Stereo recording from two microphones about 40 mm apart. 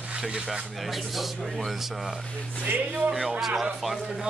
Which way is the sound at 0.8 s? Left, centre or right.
Centre.